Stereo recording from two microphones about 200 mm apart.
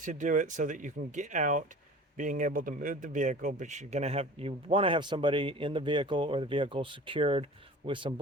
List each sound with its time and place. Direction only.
0.0 s speech: 40° right (ahead or behind); by 8.1 s 25° right (ahead or behind)